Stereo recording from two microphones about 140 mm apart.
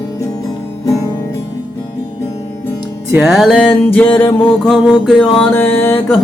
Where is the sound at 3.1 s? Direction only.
5° right (ahead or behind).